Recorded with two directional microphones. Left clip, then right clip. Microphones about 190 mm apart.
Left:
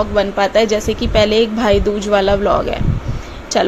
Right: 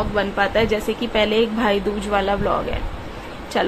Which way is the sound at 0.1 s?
20° left (ahead or behind).